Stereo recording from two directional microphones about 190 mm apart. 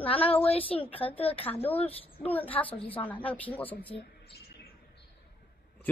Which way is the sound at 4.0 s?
60° left (ahead or behind).